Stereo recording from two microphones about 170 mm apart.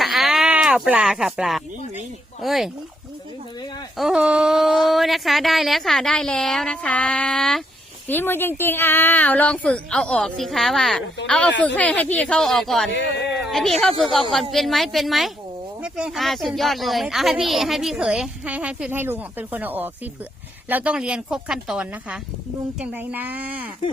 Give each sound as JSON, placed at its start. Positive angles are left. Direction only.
{"t": 0.0, "sound": "sheep", "side_deg": 0}
{"t": 2.4, "sound": "speech", "side_deg": 0}
{"t": 3.9, "sound": "a woman's voice", "side_deg": -5}
{"t": 12.9, "sound": "speech", "side_deg": 90}
{"t": 13.3, "sound": "speech", "side_deg": 0}